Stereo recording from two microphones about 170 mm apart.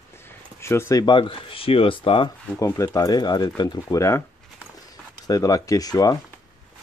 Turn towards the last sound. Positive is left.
turn(degrees=20)  # may be behind; listen again after turning